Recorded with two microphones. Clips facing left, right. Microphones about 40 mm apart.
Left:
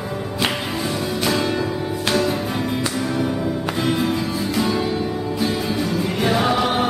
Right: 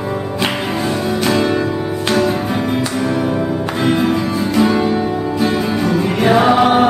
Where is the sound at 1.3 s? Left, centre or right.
Centre.